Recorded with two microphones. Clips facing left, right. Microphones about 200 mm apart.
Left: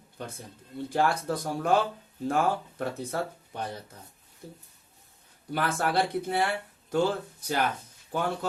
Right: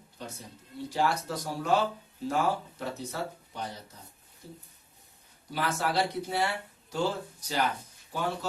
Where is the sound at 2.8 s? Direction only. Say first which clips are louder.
Left 4 dB; 55° left (ahead or behind).